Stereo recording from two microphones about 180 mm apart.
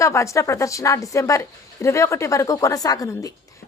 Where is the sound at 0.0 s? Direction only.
15° left (ahead or behind).